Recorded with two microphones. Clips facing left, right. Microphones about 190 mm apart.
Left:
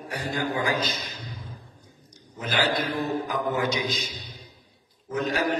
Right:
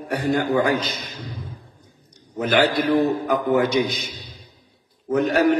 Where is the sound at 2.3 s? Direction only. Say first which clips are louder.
Right 7 dB; 65° right (ahead or behind).